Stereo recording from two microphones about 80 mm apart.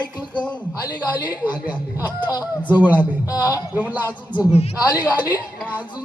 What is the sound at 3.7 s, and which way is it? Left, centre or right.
Speech, right.